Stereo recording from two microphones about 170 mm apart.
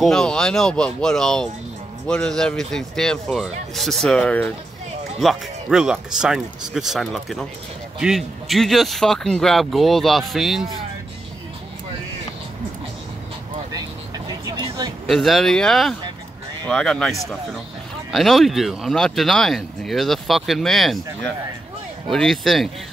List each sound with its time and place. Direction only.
0.0 s speech: 5° left (ahead or behind)
14.4 s vehicle: 25° right (ahead or behind)
15.0 s speech: centre (ahead or behind)